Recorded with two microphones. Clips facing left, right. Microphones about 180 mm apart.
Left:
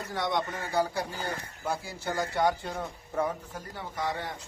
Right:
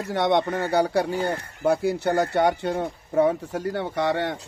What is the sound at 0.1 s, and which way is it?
Speech, 75° right (ahead or behind).